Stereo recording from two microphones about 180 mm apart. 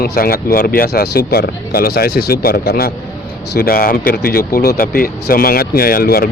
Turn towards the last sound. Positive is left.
turn(degrees=55)  # may be behind; listen again after turning